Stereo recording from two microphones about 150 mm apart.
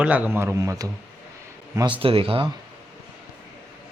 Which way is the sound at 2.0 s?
40° right (ahead or behind).